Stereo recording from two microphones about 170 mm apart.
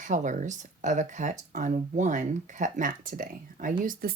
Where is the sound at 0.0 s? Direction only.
45° right (ahead or behind).